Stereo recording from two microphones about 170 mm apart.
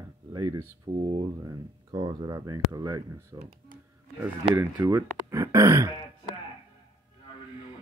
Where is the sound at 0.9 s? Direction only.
35° right (ahead or behind).